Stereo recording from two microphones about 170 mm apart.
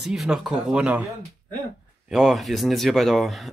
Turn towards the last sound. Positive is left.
turn(degrees=0)  # may be behind; listen again after turning